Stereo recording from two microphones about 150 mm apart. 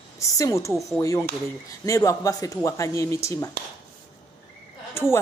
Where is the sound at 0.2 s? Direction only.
20° left (ahead or behind).